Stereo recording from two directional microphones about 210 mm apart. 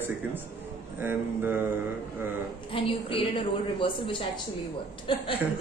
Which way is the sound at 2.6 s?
25° left (ahead or behind).